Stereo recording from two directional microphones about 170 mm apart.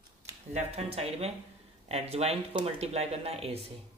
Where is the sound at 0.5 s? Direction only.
35° right (ahead or behind).